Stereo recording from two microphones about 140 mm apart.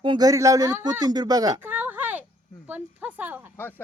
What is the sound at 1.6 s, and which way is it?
A woman's voice, 15° right (ahead or behind).